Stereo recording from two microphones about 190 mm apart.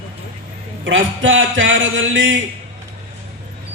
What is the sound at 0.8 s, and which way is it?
A man's voice, 90° right.